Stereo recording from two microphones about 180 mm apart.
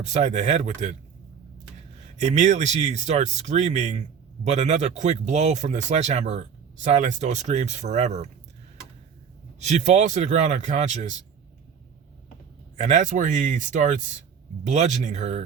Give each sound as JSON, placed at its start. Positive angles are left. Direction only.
{"t": 0.1, "sound": "speech", "side_deg": -40}
{"t": 2.1, "sound": "speech", "side_deg": -40}
{"t": 9.6, "sound": "speech", "side_deg": -40}
{"t": 12.7, "sound": "speech", "side_deg": -40}